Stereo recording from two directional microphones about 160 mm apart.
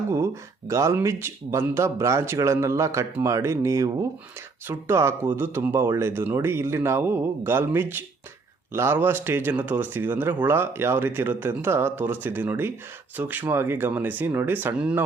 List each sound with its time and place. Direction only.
0.7 s speech: 20° right (ahead or behind)